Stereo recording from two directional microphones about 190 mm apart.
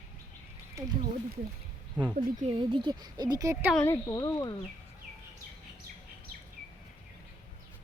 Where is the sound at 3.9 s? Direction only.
20° left (ahead or behind).